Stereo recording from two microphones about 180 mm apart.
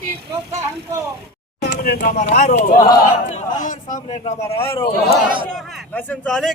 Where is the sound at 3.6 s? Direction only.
45° left (ahead or behind).